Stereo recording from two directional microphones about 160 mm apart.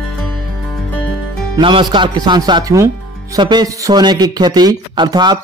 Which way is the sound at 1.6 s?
30° right (ahead or behind).